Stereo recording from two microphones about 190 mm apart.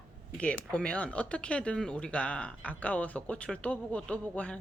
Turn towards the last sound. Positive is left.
turn(degrees=5)  # may be behind; listen again after turning